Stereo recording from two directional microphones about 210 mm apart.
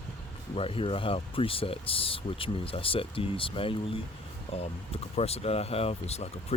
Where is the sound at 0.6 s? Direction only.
25° left (ahead or behind).